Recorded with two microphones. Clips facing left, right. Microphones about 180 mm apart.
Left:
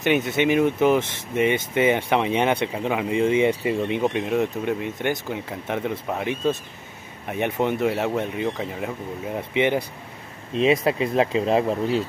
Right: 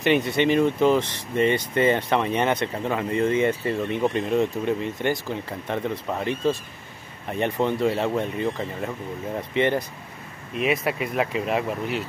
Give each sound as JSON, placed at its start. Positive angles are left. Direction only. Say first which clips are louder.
{"t": 0.0, "sound": "speech", "louder": "even", "side_deg": 0}
{"t": 10.5, "sound": "speech", "louder": "left 4 dB", "side_deg": 25}